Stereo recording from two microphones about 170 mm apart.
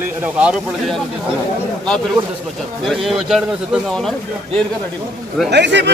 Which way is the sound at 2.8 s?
Centre (ahead or behind).